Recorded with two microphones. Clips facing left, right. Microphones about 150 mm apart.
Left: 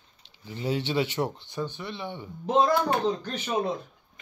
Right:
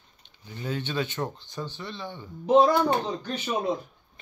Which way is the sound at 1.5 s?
15° left (ahead or behind).